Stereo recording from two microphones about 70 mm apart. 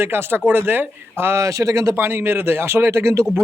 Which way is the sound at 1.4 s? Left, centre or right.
Right.